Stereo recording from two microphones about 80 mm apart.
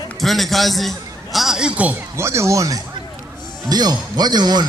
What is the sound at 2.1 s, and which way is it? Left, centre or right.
Speech, right.